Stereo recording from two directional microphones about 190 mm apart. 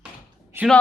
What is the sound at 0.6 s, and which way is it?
Speech, 10° right (ahead or behind).